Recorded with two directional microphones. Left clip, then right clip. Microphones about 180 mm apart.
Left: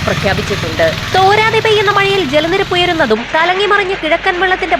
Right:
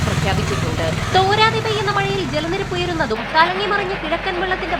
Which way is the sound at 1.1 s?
30° left (ahead or behind).